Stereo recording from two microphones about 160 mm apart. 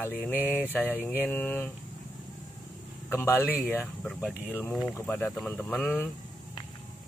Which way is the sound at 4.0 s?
Centre (ahead or behind).